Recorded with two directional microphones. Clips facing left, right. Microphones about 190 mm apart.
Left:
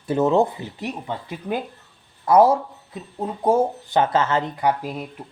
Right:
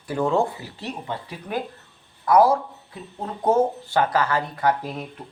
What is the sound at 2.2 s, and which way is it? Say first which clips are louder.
Speech: left 2 dB; 25° left (ahead or behind).